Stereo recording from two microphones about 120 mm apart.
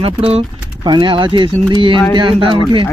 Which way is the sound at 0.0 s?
50° right (ahead or behind).